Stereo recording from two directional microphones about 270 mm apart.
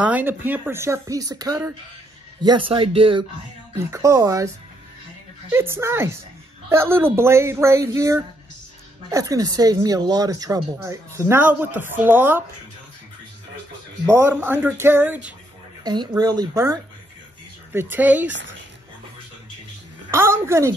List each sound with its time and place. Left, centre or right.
0.0 s speech: centre
5.5 s speech: centre
14.0 s speech: centre
20.1 s a sound: centre